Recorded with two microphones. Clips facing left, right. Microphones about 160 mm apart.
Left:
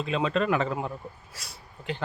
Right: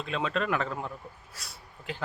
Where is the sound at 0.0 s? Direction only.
Centre (ahead or behind).